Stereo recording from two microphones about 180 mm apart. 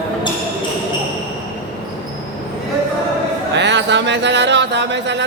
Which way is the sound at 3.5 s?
75° right (ahead or behind).